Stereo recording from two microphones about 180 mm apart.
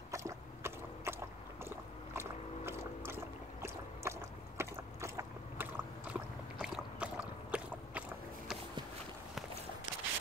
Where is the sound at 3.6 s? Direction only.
15° right (ahead or behind).